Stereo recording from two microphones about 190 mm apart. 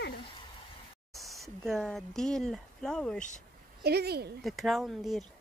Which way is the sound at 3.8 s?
55° right (ahead or behind).